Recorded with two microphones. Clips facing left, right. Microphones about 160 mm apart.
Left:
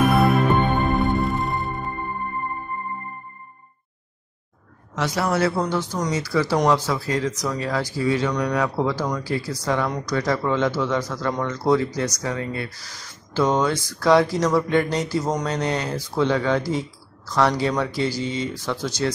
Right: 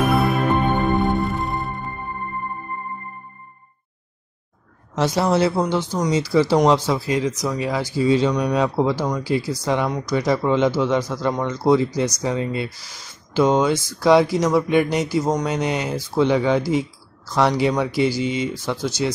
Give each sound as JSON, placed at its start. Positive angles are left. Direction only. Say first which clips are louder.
{"t": 0.6, "sound": "music", "louder": "right 1 dB", "side_deg": 0}
{"t": 4.9, "sound": "speech", "louder": "right 4 dB", "side_deg": -25}